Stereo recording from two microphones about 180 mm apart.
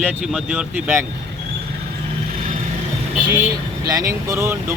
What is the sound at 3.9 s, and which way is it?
Speech, 20° right (ahead or behind).